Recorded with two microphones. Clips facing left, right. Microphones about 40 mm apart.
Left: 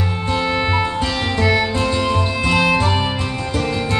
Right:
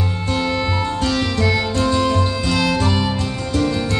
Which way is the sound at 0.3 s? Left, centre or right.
Centre.